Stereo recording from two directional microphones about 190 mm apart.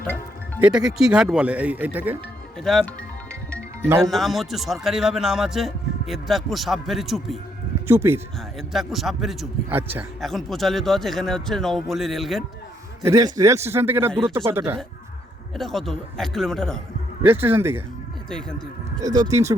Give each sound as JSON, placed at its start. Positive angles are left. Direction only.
{"t": 0.0, "sound": "music", "side_deg": 10}
{"t": 0.6, "sound": "a man's voice", "side_deg": -5}
{"t": 2.6, "sound": "a man's voice", "side_deg": 0}
{"t": 4.0, "sound": "a man's voice", "side_deg": 0}
{"t": 7.9, "sound": "a man's voice", "side_deg": -10}
{"t": 8.5, "sound": "a man's voice", "side_deg": 0}
{"t": 10.2, "sound": "a man's voice", "side_deg": 0}
{"t": 13.1, "sound": "a man's voice", "side_deg": -20}
{"t": 15.5, "sound": "a man's voice", "side_deg": 0}
{"t": 17.2, "sound": "a man's voice", "side_deg": -10}
{"t": 19.3, "sound": "a man's voice", "side_deg": -15}